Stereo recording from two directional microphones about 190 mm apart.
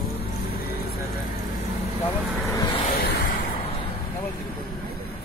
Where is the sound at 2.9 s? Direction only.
55° left (ahead or behind).